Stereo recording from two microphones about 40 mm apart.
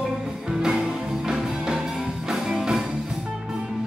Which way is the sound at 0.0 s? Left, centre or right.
Centre.